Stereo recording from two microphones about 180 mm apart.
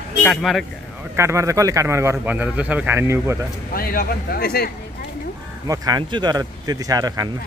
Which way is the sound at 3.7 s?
55° left (ahead or behind).